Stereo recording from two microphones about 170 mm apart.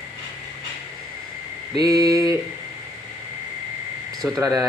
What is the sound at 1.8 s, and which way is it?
Speech, 20° right (ahead or behind).